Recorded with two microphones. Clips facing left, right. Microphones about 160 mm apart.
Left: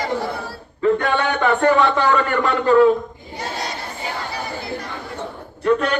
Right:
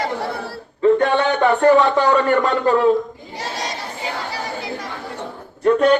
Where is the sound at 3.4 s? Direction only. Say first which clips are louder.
Even; 90° right.